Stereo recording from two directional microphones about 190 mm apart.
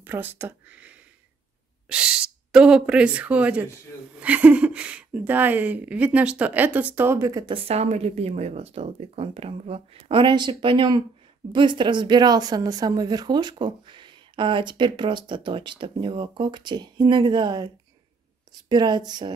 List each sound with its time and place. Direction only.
0.0 s speech: 10° right (ahead or behind)